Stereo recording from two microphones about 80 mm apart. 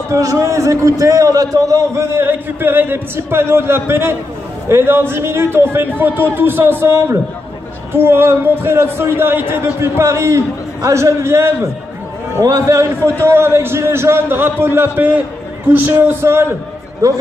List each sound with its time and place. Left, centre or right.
0.1 s a man's voice: right
17.0 s a man's voice: right